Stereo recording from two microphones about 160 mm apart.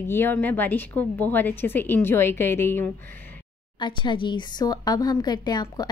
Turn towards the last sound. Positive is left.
turn(degrees=25)  # may be behind; listen again after turning